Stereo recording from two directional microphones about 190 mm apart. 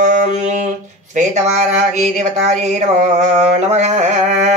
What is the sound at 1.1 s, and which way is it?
Speech, 40° right (ahead or behind).